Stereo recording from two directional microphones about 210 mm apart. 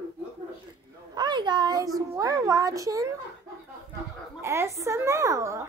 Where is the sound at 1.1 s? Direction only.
20° right (ahead or behind).